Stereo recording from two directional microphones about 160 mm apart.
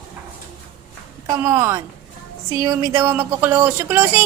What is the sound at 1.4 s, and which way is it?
Speech, 15° right (ahead or behind).